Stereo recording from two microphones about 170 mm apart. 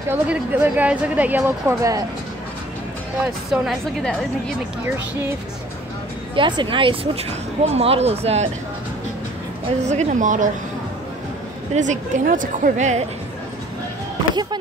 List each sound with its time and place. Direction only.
0.1 s a woman's voice: 10° right (ahead or behind)
3.4 s a woman's voice: centre (ahead or behind)
6.3 s speech: 30° right (ahead or behind)
9.8 s speech: 45° right (ahead or behind)
11.7 s speech: 45° right (ahead or behind)